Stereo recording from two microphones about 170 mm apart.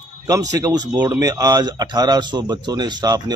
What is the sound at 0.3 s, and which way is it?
Speech, 20° right (ahead or behind).